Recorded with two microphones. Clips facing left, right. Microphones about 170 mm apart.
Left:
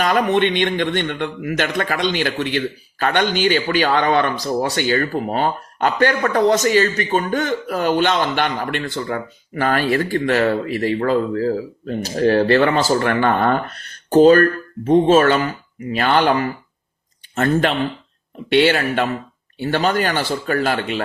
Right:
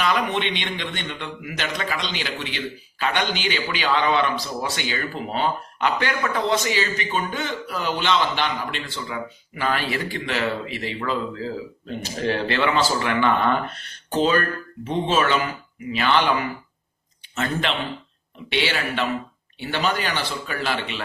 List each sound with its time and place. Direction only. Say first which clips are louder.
0.0 s a man's voice: left 6 dB; 45° left (ahead or behind)